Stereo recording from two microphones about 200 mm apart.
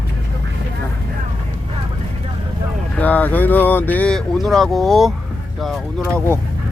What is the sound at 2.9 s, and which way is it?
Speech, 10° left (ahead or behind).